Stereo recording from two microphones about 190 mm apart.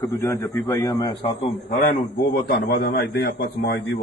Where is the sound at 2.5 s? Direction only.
65° left (ahead or behind).